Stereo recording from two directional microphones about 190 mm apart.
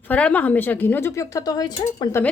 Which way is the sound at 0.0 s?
5° left (ahead or behind).